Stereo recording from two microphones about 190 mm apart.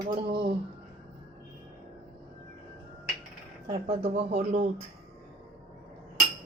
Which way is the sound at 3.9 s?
30° right (ahead or behind).